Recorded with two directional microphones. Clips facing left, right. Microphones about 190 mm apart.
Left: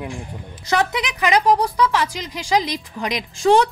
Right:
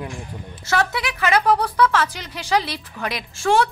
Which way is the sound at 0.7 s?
15° left (ahead or behind).